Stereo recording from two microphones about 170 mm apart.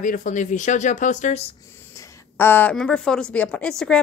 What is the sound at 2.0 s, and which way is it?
A woman's voice, 10° left (ahead or behind).